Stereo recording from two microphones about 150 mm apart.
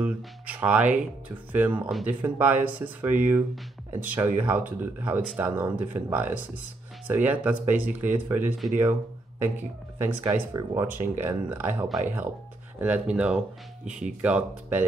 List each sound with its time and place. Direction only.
0.0 s speech: 10° right (ahead or behind)
11.9 s speech: centre (ahead or behind)